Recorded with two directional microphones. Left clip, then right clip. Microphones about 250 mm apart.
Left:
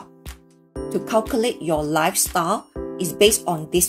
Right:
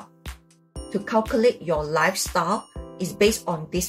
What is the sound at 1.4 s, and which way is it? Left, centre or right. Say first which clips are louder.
Speech: right 1 dB; left.